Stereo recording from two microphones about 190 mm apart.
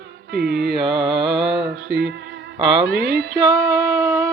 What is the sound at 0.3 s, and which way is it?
Speech, 60° right (ahead or behind).